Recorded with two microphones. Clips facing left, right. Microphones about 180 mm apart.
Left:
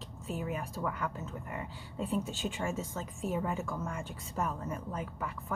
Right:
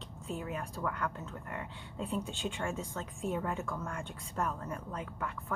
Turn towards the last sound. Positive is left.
turn(degrees=5)  # may be behind; listen again after turning